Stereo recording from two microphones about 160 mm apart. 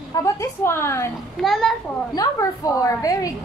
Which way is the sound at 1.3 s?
Centre (ahead or behind).